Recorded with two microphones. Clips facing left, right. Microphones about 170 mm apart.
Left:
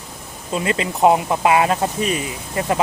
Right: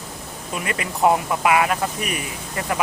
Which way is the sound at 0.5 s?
25° left (ahead or behind).